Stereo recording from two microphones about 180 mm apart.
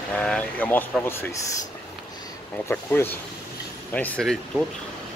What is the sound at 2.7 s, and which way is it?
Speech, 15° left (ahead or behind).